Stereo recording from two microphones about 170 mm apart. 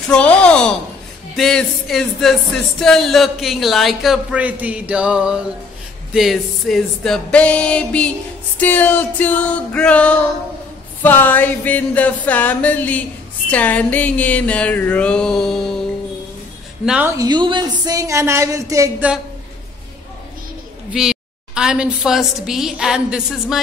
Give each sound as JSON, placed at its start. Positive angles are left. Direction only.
{"t": 0.1, "sound": "a woman's voice", "side_deg": 5}
{"t": 8.5, "sound": "a sound", "side_deg": 10}
{"t": 16.8, "sound": "a man's voice", "side_deg": -5}
{"t": 17.2, "sound": "speech", "side_deg": -25}
{"t": 20.9, "sound": "a woman's voice", "side_deg": -5}